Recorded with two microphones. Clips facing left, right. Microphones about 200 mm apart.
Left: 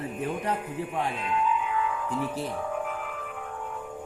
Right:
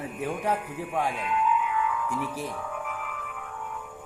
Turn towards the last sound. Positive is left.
turn(degrees=30)  # may be behind; listen again after turning